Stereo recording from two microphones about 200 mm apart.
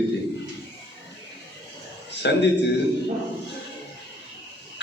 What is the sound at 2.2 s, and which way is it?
Speech, 60° left (ahead or behind).